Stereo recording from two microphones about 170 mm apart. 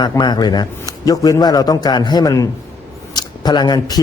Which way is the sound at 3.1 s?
25° left (ahead or behind).